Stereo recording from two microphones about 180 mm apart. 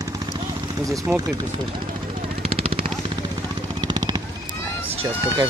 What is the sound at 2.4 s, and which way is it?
Vehicle, 30° right (ahead or behind).